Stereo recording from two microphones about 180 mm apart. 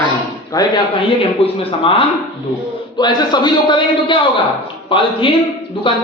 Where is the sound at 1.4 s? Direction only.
30° left (ahead or behind).